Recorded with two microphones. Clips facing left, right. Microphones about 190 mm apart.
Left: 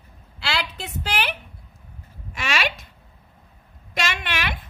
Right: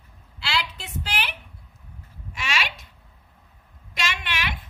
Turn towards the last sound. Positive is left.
turn(degrees=55)  # may be behind; listen again after turning